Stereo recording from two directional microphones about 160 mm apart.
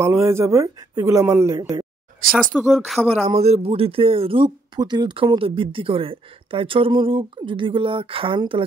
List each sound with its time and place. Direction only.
0.0 s speech: 15° right (ahead or behind)
2.5 s speech: centre (ahead or behind)
3.1 s speech: 40° right (ahead or behind)